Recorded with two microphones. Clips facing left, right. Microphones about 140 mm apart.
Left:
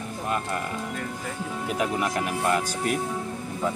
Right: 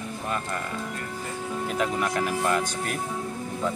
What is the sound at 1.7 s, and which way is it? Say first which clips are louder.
Speech: left 1 dB; 10° left (ahead or behind).